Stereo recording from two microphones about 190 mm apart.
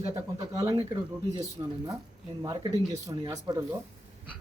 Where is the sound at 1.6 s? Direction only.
25° right (ahead or behind).